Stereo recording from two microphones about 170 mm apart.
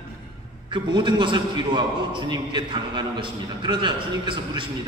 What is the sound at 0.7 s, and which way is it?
A man's voice, 25° right (ahead or behind).